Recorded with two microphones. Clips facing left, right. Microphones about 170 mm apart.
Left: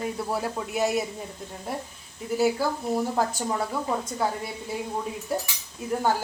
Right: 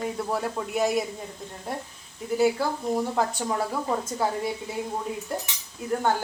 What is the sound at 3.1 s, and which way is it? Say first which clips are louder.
Speech: even; centre (ahead or behind).